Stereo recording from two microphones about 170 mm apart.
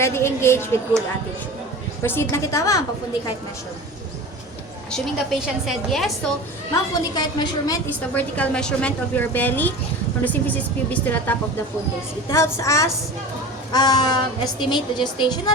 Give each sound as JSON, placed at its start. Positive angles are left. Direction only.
{"t": 0.0, "sound": "a woman's voice", "side_deg": 15}
{"t": 2.0, "sound": "a woman's voice", "side_deg": 15}
{"t": 4.9, "sound": "a woman's voice", "side_deg": 0}
{"t": 6.7, "sound": "a woman's voice", "side_deg": 25}
{"t": 8.1, "sound": "a woman's voice", "side_deg": 5}